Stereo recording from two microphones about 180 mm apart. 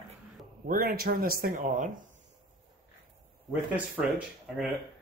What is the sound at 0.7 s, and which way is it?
Speech, 55° right (ahead or behind).